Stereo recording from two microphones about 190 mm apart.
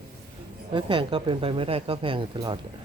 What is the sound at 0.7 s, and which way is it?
Speech, 25° right (ahead or behind).